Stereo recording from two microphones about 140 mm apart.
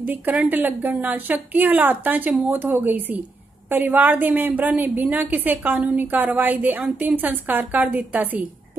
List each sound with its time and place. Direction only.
0.0 s a woman's voice: 15° right (ahead or behind)